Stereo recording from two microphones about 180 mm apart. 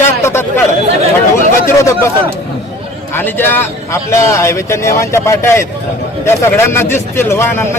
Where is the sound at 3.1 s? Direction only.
10° left (ahead or behind).